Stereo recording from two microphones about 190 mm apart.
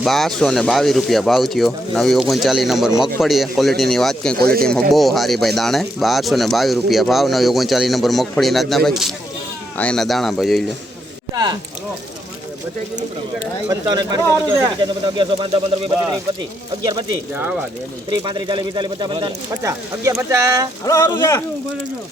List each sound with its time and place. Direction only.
0.0 s speech: centre (ahead or behind)
4.4 s speech: 55° right (ahead or behind)
4.6 s speech: centre (ahead or behind)
13.7 s speech: 20° right (ahead or behind)
16.8 s speech: 20° right (ahead or behind)
17.3 s speech: 5° right (ahead or behind)
18.1 s speech: 25° right (ahead or behind)
20.8 s speech: 20° left (ahead or behind)